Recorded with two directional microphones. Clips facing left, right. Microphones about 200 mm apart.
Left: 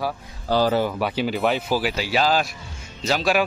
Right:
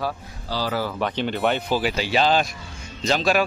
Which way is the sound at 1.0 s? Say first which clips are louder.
Left 1 dB; 5° left (ahead or behind).